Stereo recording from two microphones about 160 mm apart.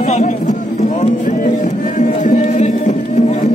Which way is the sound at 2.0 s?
50° left (ahead or behind).